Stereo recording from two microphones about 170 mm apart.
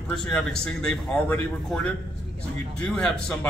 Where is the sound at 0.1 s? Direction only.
5° left (ahead or behind).